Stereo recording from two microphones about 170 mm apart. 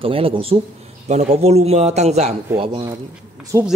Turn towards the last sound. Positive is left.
turn(degrees=-20)  # may be behind; listen again after turning